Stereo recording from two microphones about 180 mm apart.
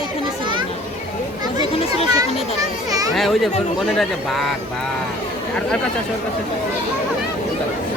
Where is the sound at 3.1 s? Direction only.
Centre (ahead or behind).